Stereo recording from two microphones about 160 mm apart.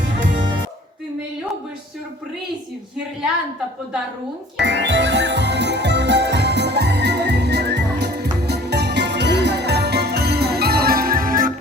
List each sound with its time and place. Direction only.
4.5 s music: 90° right; by 11.5 s 60° right (ahead or behind)